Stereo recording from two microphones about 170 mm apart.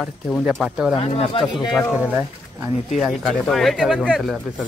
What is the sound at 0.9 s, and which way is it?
Speech, 35° left (ahead or behind).